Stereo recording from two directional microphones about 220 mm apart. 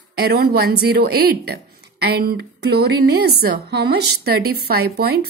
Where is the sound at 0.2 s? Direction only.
45° right (ahead or behind).